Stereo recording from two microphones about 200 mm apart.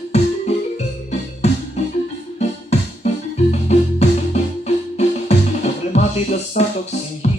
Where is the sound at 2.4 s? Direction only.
35° left (ahead or behind).